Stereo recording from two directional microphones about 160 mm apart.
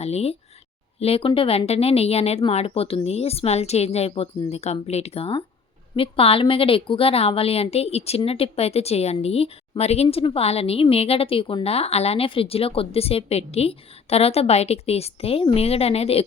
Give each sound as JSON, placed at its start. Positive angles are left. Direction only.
{"t": 0.0, "sound": "a woman's voice", "side_deg": 40}